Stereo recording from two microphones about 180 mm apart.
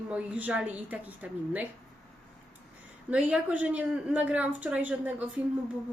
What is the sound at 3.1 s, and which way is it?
A woman's voice, 5° right (ahead or behind).